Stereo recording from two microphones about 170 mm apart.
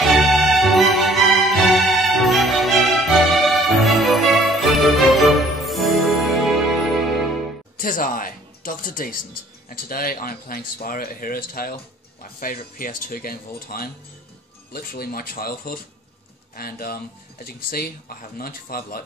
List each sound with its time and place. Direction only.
0.1 s music: centre (ahead or behind)
7.7 s speech: 55° left (ahead or behind)